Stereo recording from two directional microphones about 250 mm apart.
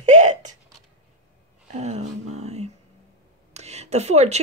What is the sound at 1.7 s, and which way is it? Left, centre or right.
Speech, right.